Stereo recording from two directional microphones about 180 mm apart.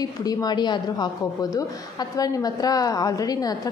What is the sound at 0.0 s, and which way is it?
A woman's voice, 20° left (ahead or behind).